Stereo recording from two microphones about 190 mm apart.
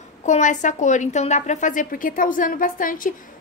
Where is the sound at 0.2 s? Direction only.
40° left (ahead or behind).